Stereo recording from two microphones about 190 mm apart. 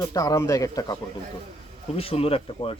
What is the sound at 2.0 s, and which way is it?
Speech, 30° left (ahead or behind).